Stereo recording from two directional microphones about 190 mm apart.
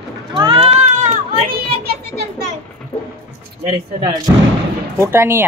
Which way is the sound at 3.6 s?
25° right (ahead or behind).